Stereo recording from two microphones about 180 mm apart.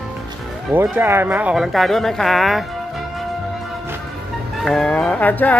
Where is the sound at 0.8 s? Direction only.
10° right (ahead or behind).